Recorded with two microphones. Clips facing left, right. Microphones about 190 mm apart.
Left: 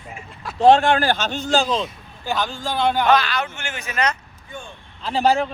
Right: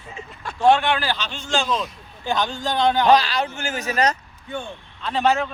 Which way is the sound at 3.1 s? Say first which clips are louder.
Right 2 dB; 35° right (ahead or behind).